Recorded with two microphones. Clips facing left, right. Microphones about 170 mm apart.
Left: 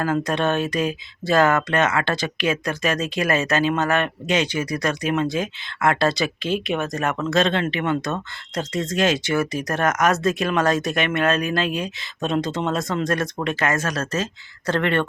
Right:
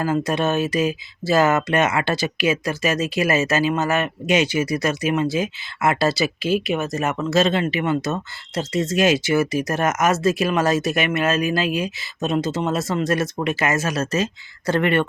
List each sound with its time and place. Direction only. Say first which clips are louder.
0.0 s speech: right 1 dB; 5° right (ahead or behind)